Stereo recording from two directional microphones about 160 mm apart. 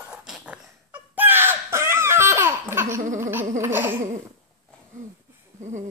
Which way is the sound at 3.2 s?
15° right (ahead or behind).